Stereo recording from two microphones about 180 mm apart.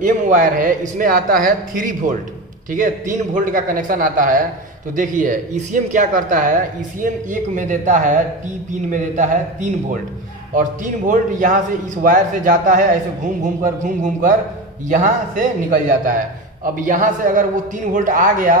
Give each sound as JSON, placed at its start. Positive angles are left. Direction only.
{"t": 0.0, "sound": "a man's voice", "side_deg": -45}